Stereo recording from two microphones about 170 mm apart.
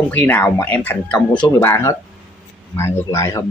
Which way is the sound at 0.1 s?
10° left (ahead or behind).